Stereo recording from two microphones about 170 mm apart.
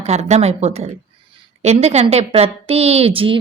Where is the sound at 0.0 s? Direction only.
40° right (ahead or behind).